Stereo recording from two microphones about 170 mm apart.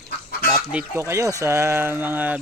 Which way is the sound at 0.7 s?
15° right (ahead or behind).